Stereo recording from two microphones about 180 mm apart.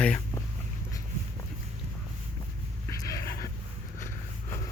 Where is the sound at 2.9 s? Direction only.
15° left (ahead or behind).